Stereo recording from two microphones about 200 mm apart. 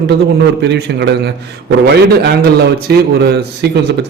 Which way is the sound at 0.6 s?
60° right (ahead or behind).